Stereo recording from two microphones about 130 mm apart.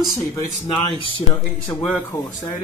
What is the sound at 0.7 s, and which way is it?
Speech, 40° left (ahead or behind).